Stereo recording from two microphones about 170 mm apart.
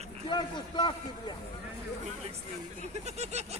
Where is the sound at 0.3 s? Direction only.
25° left (ahead or behind).